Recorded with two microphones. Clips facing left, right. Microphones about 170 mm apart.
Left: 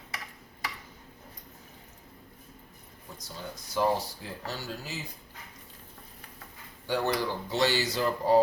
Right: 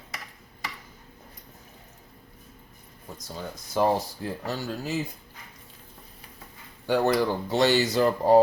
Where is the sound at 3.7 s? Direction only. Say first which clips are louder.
Right 4 dB; 55° right (ahead or behind).